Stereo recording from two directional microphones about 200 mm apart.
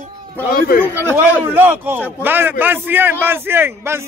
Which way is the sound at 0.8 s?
10° right (ahead or behind).